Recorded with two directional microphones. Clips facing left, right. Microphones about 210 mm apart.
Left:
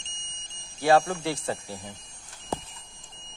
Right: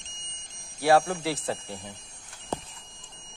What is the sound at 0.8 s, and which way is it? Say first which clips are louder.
Speech: even; 5° right (ahead or behind).